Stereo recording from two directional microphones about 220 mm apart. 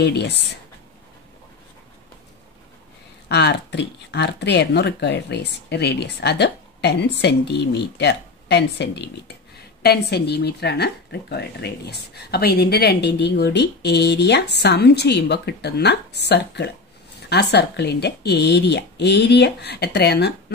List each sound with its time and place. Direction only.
0.0 s speech: 50° left (ahead or behind)
3.3 s speech: 50° left (ahead or behind)